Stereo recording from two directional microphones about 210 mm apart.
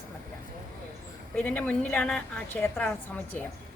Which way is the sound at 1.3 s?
5° left (ahead or behind).